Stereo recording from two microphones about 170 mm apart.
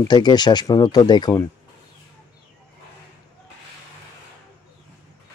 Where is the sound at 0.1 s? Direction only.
25° left (ahead or behind).